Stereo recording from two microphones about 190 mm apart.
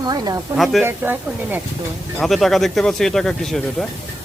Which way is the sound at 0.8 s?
10° right (ahead or behind).